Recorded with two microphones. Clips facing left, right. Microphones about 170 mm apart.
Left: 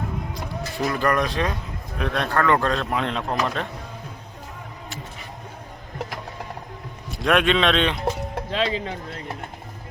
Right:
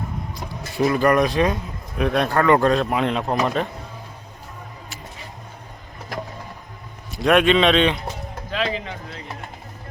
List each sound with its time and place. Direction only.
0.8 s a man's voice: 15° right (ahead or behind)
7.2 s a man's voice: centre (ahead or behind)
8.4 s speech: 30° left (ahead or behind)